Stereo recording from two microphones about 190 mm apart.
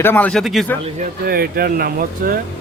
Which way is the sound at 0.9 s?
50° right (ahead or behind).